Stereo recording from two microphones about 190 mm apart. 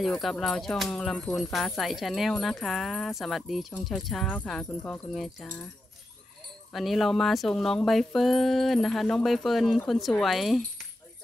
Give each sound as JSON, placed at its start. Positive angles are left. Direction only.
{"t": 0.0, "sound": "speech", "side_deg": 0}
{"t": 6.7, "sound": "speech", "side_deg": 0}